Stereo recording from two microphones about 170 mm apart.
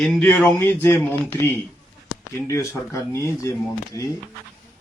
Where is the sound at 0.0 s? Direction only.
5° left (ahead or behind).